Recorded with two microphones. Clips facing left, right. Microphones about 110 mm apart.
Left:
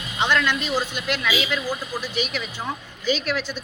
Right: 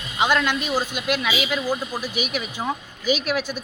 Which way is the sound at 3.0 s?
15° right (ahead or behind).